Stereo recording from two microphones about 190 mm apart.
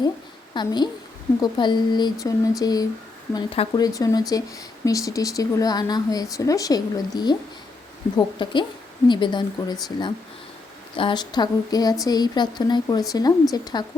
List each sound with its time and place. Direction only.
0.5 s speech: 20° left (ahead or behind)